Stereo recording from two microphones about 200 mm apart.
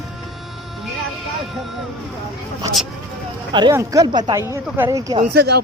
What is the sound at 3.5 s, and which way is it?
Speech, 20° right (ahead or behind).